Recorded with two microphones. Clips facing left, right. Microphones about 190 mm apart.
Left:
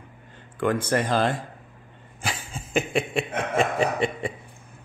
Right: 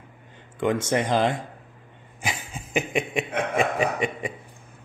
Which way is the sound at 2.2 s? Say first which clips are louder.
Even; 15° right (ahead or behind).